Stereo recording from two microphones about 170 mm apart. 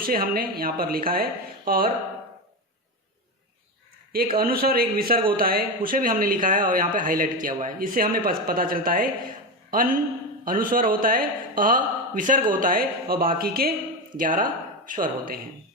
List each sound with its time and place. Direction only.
0.0 s speech: 60° right (ahead or behind)
4.4 s speech: 60° right (ahead or behind)